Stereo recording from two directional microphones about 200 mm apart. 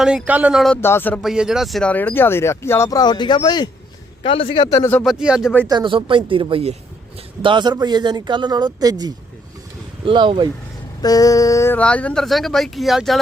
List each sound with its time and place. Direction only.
0.0 s speech: 5° right (ahead or behind)
0.8 s speech: 10° left (ahead or behind)
1.2 s a man's voice: centre (ahead or behind)
5.0 s speech: 5° right (ahead or behind)
5.6 s speech: 25° right (ahead or behind)
11.0 s speech: 20° left (ahead or behind); by 13.1 s centre (ahead or behind)